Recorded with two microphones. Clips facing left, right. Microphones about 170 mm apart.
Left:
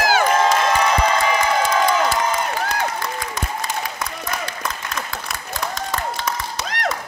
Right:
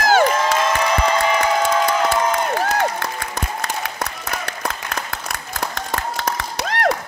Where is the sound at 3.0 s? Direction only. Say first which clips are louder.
Even; 65° right (ahead or behind).